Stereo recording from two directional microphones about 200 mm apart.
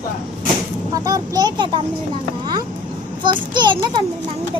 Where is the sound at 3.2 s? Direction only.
25° right (ahead or behind).